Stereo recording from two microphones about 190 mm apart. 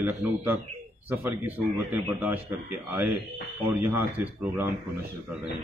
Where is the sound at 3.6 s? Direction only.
10° right (ahead or behind).